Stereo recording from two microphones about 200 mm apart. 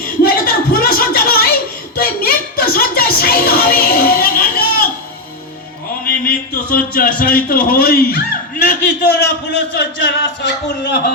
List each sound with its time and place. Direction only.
0.2 s a sound: 50° left (ahead or behind)
2.0 s music: 50° left (ahead or behind)
6.2 s a man's voice: 50° left (ahead or behind)